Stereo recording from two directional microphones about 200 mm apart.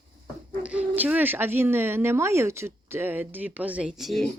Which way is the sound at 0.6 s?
5° right (ahead or behind).